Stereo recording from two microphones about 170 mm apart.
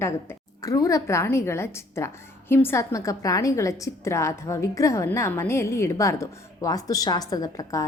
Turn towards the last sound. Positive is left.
turn(degrees=20)  # may be behind; listen again after turning